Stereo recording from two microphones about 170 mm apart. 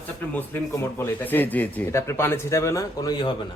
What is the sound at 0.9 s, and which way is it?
Speech, 15° left (ahead or behind).